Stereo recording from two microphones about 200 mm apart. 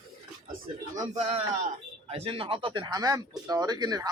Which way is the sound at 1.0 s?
35° right (ahead or behind).